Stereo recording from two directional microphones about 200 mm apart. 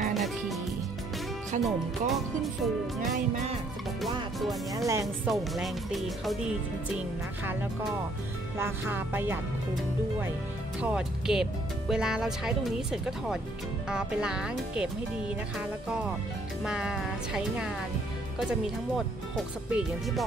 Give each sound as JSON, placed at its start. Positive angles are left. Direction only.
{"t": 0.1, "sound": "music", "side_deg": 0}
{"t": 1.6, "sound": "speech", "side_deg": 0}
{"t": 4.7, "sound": "speech", "side_deg": -15}
{"t": 5.0, "sound": "speech", "side_deg": 0}
{"t": 8.5, "sound": "speech", "side_deg": -10}
{"t": 10.8, "sound": "speech", "side_deg": -5}
{"t": 16.6, "sound": "speech", "side_deg": -5}